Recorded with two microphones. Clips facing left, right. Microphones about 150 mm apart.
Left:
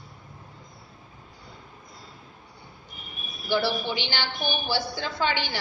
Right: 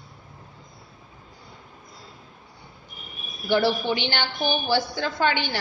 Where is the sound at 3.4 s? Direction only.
55° right (ahead or behind).